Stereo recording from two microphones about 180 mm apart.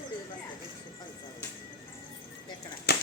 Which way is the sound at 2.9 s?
60° left (ahead or behind).